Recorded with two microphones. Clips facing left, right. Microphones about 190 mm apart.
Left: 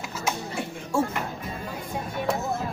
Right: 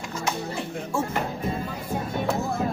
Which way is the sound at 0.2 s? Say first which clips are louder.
Even; 10° left (ahead or behind).